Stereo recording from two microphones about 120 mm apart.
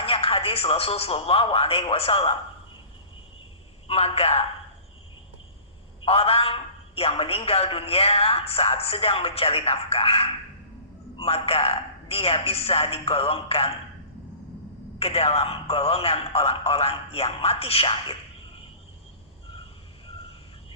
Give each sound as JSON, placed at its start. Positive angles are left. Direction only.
{"t": 0.0, "sound": "a man's voice", "side_deg": 50}
{"t": 3.8, "sound": "a man's voice", "side_deg": 60}
{"t": 6.1, "sound": "a man's voice", "side_deg": 55}
{"t": 14.9, "sound": "a man's voice", "side_deg": 55}